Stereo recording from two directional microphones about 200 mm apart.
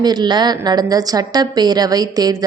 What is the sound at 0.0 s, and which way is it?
A woman's voice, 20° right (ahead or behind).